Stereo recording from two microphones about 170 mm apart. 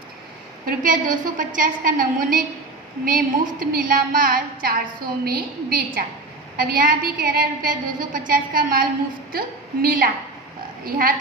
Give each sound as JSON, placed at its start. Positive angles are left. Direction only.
{"t": 0.6, "sound": "a woman's voice", "side_deg": -55}